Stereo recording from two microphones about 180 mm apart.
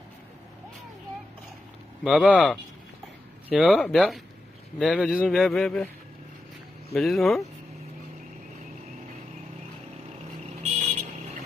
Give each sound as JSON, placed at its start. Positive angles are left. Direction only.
{"t": 2.0, "sound": "speech", "side_deg": 0}
{"t": 6.9, "sound": "speech", "side_deg": 0}
{"t": 10.6, "sound": "vehicle", "side_deg": -40}